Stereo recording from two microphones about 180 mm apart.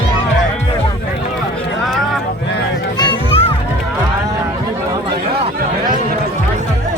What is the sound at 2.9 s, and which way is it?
Music, 25° left (ahead or behind).